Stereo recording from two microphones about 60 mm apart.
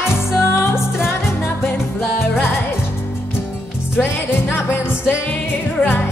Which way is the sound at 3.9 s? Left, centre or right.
Left.